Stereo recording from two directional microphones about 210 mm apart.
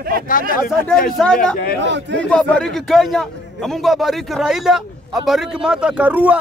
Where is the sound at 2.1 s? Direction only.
5° left (ahead or behind).